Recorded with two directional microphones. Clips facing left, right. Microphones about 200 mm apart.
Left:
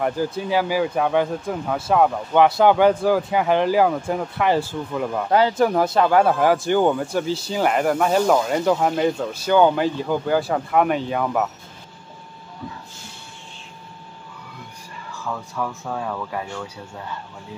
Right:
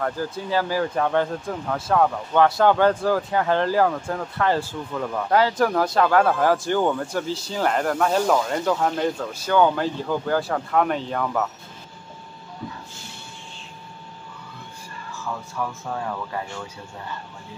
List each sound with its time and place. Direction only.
0.0 s speech: 15° left (ahead or behind)
5.3 s speech: 25° left (ahead or behind)
15.8 s speech: centre (ahead or behind)